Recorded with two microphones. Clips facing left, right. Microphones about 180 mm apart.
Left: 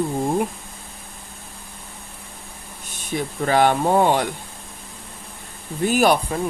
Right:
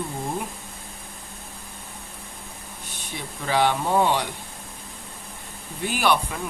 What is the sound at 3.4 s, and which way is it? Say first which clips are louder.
Speech: left 5 dB; 50° left (ahead or behind).